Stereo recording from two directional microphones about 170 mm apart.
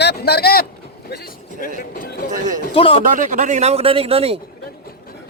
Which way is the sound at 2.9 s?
50° right (ahead or behind).